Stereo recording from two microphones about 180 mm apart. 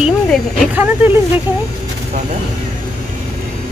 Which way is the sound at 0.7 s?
10° right (ahead or behind).